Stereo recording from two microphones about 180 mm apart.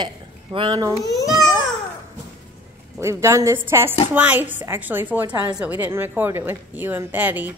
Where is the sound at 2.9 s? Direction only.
15° right (ahead or behind).